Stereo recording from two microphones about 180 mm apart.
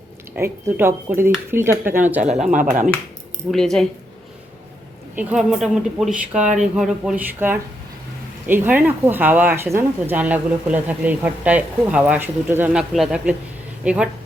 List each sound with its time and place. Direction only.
0.3 s speech: 15° right (ahead or behind)
2.5 s speech: 45° right (ahead or behind)
3.5 s speech: 5° left (ahead or behind)
5.1 s speech: 5° right (ahead or behind)